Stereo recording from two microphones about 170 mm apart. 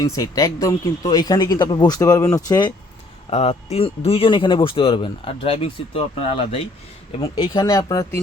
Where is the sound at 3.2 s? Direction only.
40° left (ahead or behind); by 8.2 s 20° left (ahead or behind).